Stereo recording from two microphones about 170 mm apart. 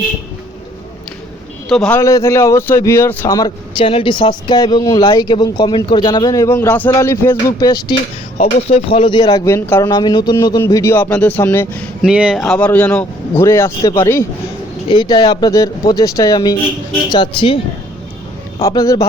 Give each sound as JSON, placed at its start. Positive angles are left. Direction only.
{"t": 1.7, "sound": "a man's voice", "side_deg": 5}
{"t": 2.0, "sound": "speech", "side_deg": 15}
{"t": 3.8, "sound": "speech", "side_deg": 30}
{"t": 8.4, "sound": "speech", "side_deg": 35}
{"t": 9.9, "sound": "speech", "side_deg": 25}
{"t": 12.0, "sound": "speech", "side_deg": -5}
{"t": 14.8, "sound": "speech", "side_deg": 25}
{"t": 18.6, "sound": "speech", "side_deg": 20}